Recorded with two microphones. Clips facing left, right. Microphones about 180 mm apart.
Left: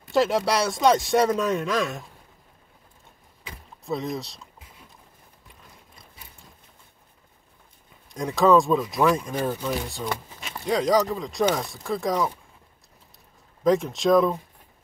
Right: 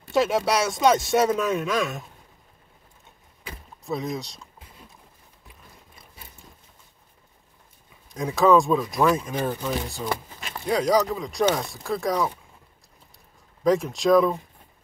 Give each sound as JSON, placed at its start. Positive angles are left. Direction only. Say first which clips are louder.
{"t": 0.1, "sound": "speech", "louder": "even", "side_deg": 0}
{"t": 3.8, "sound": "speech", "louder": "even", "side_deg": 0}
{"t": 8.1, "sound": "speech", "louder": "even", "side_deg": 0}
{"t": 13.7, "sound": "speech", "louder": "even", "side_deg": 0}